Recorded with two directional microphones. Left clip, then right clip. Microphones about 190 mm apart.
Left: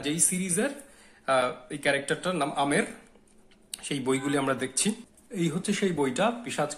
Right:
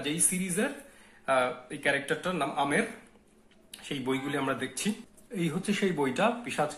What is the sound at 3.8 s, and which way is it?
Speech, 30° left (ahead or behind).